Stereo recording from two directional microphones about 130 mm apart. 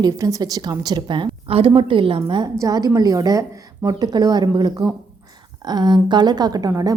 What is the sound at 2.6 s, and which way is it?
A woman's voice, 30° right (ahead or behind).